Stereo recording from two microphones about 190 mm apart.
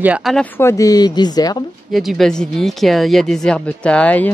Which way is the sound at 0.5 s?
15° left (ahead or behind).